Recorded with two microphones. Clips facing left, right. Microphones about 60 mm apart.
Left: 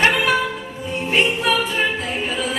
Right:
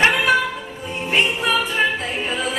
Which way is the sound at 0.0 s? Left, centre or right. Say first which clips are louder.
Right 1 dB; centre.